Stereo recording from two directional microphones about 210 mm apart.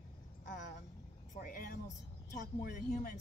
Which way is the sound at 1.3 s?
45° left (ahead or behind).